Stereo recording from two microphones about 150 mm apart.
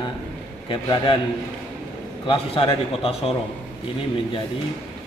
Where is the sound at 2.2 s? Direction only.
35° left (ahead or behind).